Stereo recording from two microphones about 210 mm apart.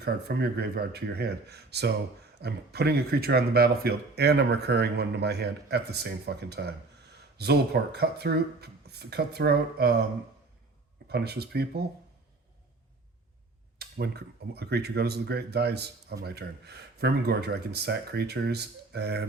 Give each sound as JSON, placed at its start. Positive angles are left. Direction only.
{"t": 0.0, "sound": "speech", "side_deg": -50}
{"t": 11.1, "sound": "speech", "side_deg": -50}
{"t": 13.7, "sound": "speech", "side_deg": -50}